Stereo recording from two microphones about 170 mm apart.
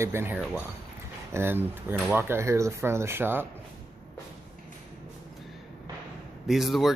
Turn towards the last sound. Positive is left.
turn(degrees=0)  # may be behind; listen again after turning